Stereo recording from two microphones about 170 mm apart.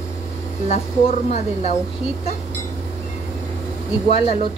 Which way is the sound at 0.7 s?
40° left (ahead or behind).